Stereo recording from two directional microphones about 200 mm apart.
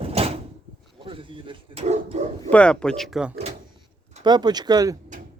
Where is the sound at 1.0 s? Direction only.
25° right (ahead or behind).